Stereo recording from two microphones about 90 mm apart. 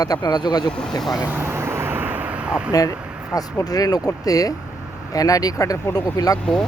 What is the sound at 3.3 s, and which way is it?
Speech, 40° left (ahead or behind).